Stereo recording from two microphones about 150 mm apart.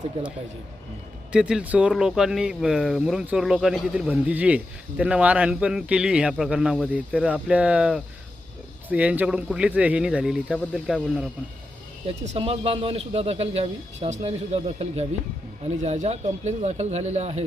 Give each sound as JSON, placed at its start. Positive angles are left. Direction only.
{"t": 1.3, "sound": "speech", "side_deg": -5}
{"t": 12.0, "sound": "a man's voice", "side_deg": -40}